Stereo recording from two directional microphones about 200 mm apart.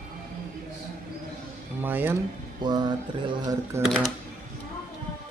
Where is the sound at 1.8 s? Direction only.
10° right (ahead or behind).